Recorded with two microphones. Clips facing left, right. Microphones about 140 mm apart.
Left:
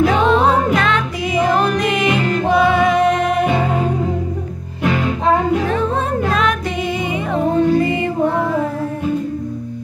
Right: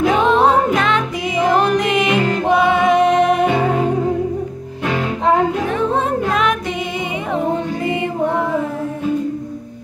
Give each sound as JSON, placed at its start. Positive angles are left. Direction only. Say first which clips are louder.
{"t": 0.0, "sound": "music", "louder": "even", "side_deg": -20}
{"t": 7.3, "sound": "music", "louder": "left 6 dB", "side_deg": -15}